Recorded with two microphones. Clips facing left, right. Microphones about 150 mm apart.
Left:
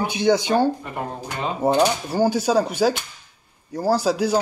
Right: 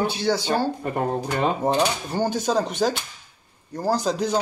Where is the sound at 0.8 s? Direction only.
40° right (ahead or behind).